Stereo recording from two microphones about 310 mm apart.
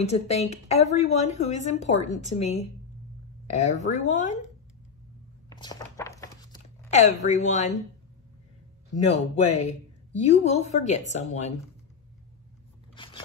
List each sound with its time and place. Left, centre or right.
0.0 s a woman's voice: left
5.6 s a sound: centre
8.9 s a woman's voice: left
12.9 s zipper: centre